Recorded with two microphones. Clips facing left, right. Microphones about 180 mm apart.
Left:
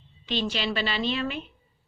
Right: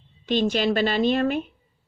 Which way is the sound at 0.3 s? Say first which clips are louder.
Right 7 dB; 50° right (ahead or behind).